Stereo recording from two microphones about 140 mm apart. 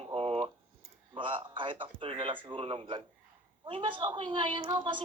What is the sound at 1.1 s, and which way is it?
A man's voice, 40° right (ahead or behind).